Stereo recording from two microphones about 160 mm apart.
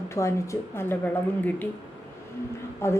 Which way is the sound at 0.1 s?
15° left (ahead or behind).